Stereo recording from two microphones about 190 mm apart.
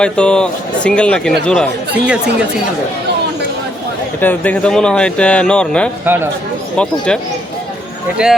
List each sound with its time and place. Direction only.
0.0 s speech: 5° left (ahead or behind)
4.2 s speech: 10° left (ahead or behind)
8.2 s speech: 5° right (ahead or behind)